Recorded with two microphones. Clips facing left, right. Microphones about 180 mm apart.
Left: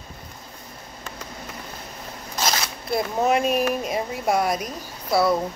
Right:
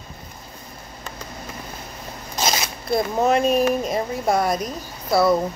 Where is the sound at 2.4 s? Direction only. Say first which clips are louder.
Right 2 dB; 20° right (ahead or behind).